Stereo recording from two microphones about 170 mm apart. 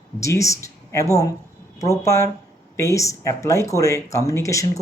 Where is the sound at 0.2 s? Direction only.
20° left (ahead or behind).